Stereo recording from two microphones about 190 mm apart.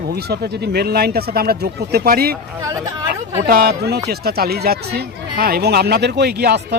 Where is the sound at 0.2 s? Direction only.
60° right (ahead or behind).